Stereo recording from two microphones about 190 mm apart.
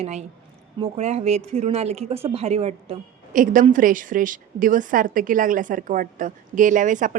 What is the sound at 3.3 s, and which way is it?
A woman's voice, 45° right (ahead or behind).